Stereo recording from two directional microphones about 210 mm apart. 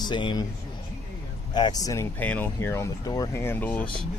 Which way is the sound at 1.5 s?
20° left (ahead or behind).